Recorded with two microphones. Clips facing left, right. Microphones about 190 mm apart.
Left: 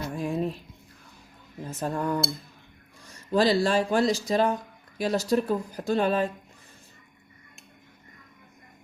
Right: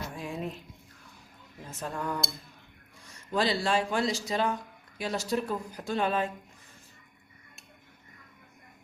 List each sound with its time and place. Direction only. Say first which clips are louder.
0.2 s music: left 8 dB; 40° left (ahead or behind)
1.8 s speech: left 6 dB; 40° left (ahead or behind)
3.3 s speech: left 5 dB; 40° left (ahead or behind)